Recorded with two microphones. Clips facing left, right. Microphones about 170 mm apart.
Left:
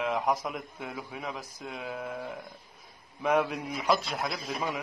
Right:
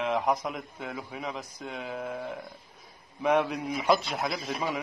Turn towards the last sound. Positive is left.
turn(degrees=0)  # may be behind; listen again after turning